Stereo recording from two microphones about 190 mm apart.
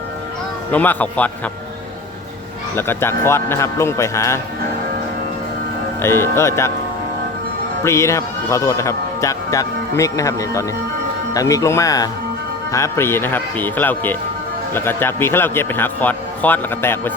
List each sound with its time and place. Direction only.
0.7 s speech: 10° left (ahead or behind)
2.7 s speech: 10° left (ahead or behind)
6.0 s speech: 15° left (ahead or behind)
7.9 s speech: 15° left (ahead or behind)